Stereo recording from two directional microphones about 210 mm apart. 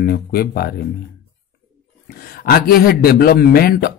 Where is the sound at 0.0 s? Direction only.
45° left (ahead or behind).